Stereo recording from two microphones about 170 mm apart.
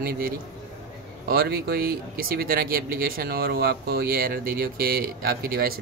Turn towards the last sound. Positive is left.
turn(degrees=-60)  # may be behind; listen again after turning